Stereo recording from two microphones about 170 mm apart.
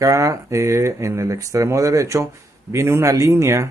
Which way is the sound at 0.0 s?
20° right (ahead or behind).